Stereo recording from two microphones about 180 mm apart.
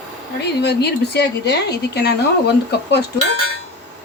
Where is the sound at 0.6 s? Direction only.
65° left (ahead or behind).